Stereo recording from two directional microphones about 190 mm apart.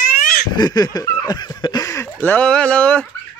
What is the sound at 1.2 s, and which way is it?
Speech, 20° left (ahead or behind).